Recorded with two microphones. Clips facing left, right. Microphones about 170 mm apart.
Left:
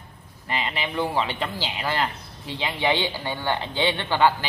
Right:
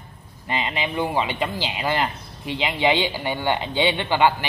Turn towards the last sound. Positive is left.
turn(degrees=-15)  # may be behind; listen again after turning